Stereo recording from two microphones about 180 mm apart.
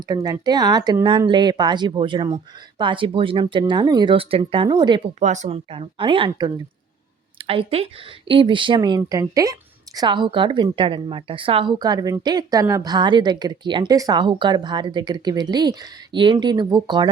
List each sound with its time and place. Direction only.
0.1 s a woman's voice: 20° right (ahead or behind)
5.2 s a woman's voice: 40° right (ahead or behind); by 17.1 s 25° right (ahead or behind)